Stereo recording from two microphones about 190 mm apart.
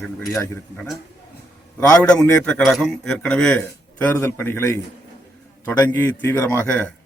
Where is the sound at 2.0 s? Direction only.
10° left (ahead or behind).